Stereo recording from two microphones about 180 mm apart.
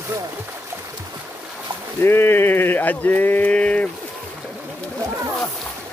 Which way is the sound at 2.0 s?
15° left (ahead or behind).